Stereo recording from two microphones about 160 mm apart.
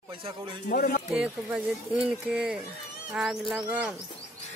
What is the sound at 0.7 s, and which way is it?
Speech, 60° left (ahead or behind).